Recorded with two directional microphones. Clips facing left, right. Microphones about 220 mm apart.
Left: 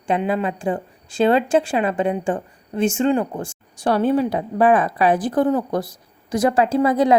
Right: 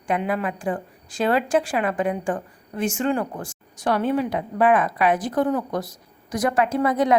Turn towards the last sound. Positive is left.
turn(degrees=30)  # may be behind; listen again after turning